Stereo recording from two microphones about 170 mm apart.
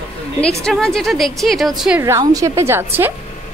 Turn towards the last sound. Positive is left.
turn(degrees=-15)  # may be behind; listen again after turning